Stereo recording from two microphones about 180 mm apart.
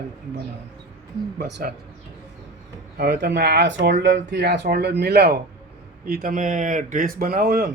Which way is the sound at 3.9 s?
80° right.